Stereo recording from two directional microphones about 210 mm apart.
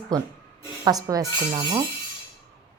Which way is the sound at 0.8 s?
15° right (ahead or behind).